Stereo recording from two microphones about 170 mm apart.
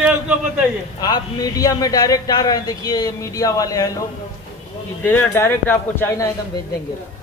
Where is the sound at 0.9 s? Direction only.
25° left (ahead or behind).